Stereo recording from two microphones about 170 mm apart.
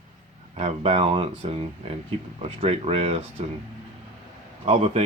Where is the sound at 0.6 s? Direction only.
35° right (ahead or behind).